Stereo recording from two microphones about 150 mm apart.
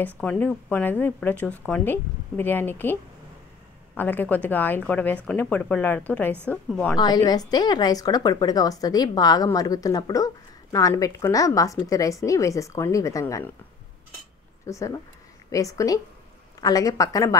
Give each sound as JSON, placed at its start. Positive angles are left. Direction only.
{"t": 0.0, "sound": "speech", "side_deg": 10}
{"t": 7.0, "sound": "a woman's voice", "side_deg": 25}
{"t": 14.7, "sound": "a woman's voice", "side_deg": 20}